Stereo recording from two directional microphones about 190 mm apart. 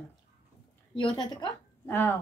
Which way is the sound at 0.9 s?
25° left (ahead or behind).